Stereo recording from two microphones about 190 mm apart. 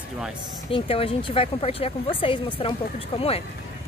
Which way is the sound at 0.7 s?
30° left (ahead or behind).